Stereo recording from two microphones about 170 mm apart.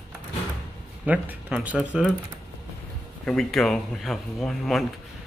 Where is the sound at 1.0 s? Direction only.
10° right (ahead or behind).